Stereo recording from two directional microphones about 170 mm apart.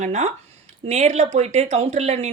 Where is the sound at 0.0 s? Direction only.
40° right (ahead or behind).